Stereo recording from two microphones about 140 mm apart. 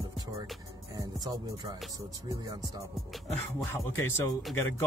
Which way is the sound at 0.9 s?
30° right (ahead or behind).